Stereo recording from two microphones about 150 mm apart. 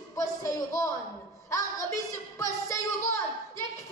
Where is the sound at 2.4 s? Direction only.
20° left (ahead or behind).